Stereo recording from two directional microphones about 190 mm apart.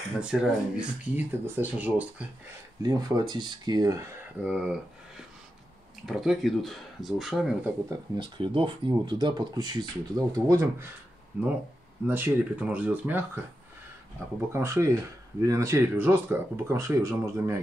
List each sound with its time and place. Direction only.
0.2 s speech: 5° right (ahead or behind)
2.8 s speech: 20° right (ahead or behind)
4.4 s speech: 5° right (ahead or behind)
8.2 s speech: 25° right (ahead or behind); by 13.4 s 10° right (ahead or behind)
14.5 s speech: 15° right (ahead or behind)